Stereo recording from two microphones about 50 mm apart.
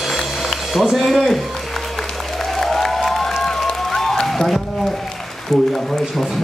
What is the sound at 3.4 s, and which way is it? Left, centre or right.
Music, centre.